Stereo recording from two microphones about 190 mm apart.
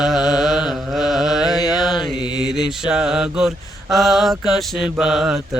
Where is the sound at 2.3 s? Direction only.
5° right (ahead or behind).